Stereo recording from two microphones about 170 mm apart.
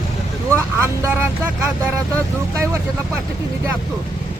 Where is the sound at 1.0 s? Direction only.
10° right (ahead or behind).